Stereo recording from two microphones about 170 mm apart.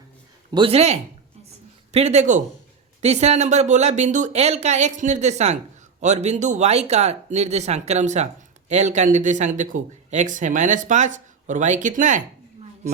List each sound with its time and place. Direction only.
0.5 s speech: 35° right (ahead or behind)